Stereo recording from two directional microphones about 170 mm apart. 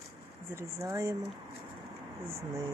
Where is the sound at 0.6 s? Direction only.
20° right (ahead or behind).